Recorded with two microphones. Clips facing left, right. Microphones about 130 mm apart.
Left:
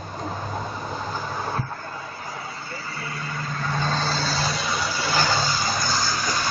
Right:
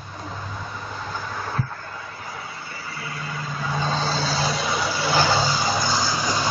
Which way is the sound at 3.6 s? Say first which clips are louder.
Right 1 dB; 10° right (ahead or behind).